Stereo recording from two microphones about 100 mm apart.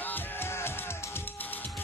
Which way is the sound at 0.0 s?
20° left (ahead or behind).